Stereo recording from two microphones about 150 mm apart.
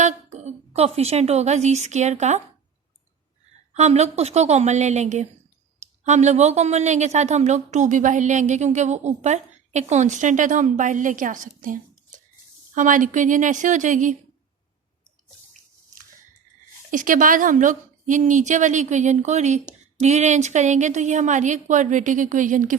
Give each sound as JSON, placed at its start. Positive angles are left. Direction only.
{"t": 0.0, "sound": "a woman's voice", "side_deg": -50}
{"t": 3.8, "sound": "a woman's voice", "side_deg": -50}
{"t": 16.9, "sound": "a woman's voice", "side_deg": -60}